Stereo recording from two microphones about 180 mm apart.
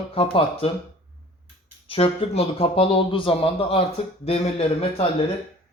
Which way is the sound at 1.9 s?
35° left (ahead or behind).